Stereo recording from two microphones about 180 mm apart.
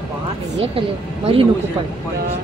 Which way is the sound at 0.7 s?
30° right (ahead or behind).